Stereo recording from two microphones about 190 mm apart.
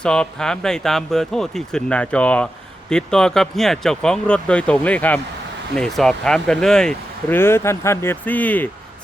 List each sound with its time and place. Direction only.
0.0 s speech: 5° left (ahead or behind)